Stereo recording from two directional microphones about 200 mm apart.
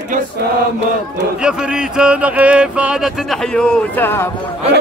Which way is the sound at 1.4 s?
5° right (ahead or behind).